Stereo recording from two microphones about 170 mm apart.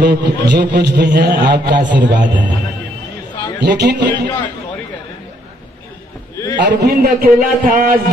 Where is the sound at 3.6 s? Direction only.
80° right.